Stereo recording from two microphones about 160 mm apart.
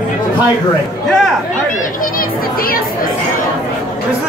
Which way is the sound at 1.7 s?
60° left (ahead or behind).